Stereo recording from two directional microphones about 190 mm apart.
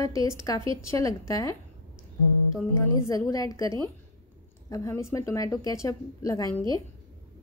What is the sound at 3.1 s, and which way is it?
Speech, 15° left (ahead or behind).